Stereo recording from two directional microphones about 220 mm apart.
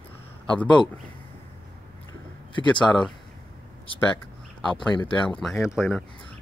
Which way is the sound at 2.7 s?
5° left (ahead or behind).